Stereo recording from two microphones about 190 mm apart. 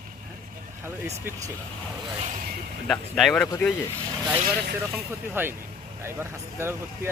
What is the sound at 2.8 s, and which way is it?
Speech, centre (ahead or behind).